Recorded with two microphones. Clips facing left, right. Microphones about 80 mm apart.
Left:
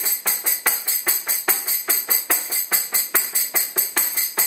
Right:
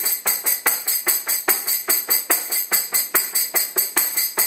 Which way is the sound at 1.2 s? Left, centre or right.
Centre.